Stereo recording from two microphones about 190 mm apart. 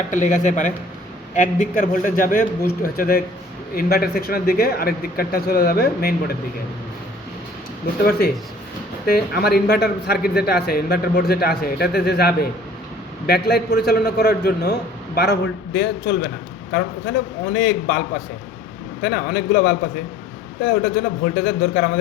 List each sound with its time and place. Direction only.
0.1 s speech: 40° left (ahead or behind)
9.0 s a man's voice: 55° left (ahead or behind)
17.5 s a man's voice: 55° left (ahead or behind)
19.0 s a man's voice: 55° left (ahead or behind)